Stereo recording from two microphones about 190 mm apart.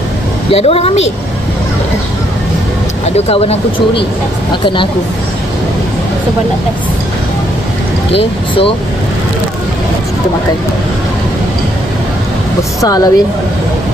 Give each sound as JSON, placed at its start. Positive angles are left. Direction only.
{"t": 0.5, "sound": "a woman's voice", "side_deg": 30}
{"t": 3.2, "sound": "a woman's voice", "side_deg": 30}
{"t": 12.8, "sound": "a woman's voice", "side_deg": 20}